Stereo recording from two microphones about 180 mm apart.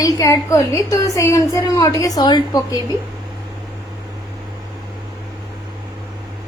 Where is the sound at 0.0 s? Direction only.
15° left (ahead or behind).